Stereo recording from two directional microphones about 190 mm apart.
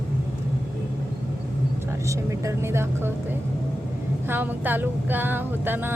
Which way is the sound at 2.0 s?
15° right (ahead or behind).